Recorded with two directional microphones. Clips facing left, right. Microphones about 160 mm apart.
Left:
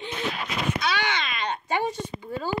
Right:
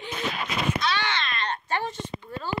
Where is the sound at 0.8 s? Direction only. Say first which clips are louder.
Left 1 dB; 10° left (ahead or behind).